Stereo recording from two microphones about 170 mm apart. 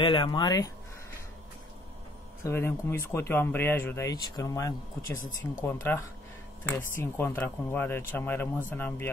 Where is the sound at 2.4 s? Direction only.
15° left (ahead or behind).